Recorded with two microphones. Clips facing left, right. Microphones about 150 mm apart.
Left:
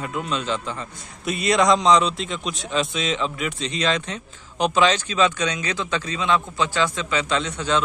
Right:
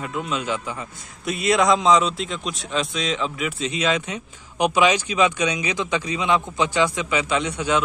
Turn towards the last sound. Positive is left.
turn(degrees=-10)  # may be behind; listen again after turning